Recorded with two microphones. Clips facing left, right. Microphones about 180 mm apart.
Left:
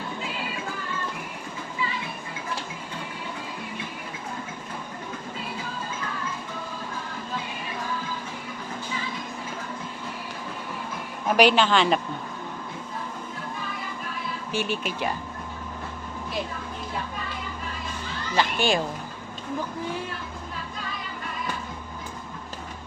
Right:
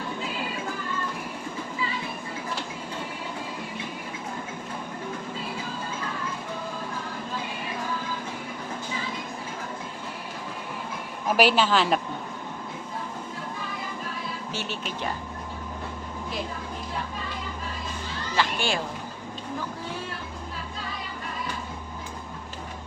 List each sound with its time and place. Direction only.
11.3 s a woman's voice: 5° right (ahead or behind)
14.5 s speech: 15° left (ahead or behind)
18.3 s children playing: 15° left (ahead or behind)